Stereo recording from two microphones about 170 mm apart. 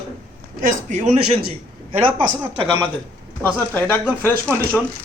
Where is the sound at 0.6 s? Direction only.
50° right (ahead or behind).